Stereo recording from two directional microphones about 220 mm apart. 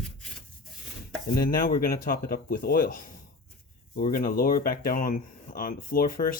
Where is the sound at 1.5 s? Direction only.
40° left (ahead or behind).